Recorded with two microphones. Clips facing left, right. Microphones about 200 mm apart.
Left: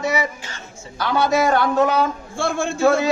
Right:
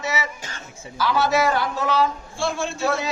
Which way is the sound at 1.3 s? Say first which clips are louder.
Left 4 dB; 55° left (ahead or behind).